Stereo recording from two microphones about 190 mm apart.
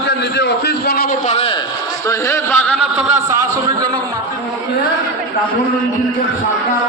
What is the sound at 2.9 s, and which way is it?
Speech, 15° right (ahead or behind).